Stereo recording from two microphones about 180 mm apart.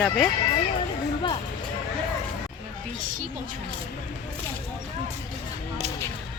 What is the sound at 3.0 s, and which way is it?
Music, 50° right (ahead or behind).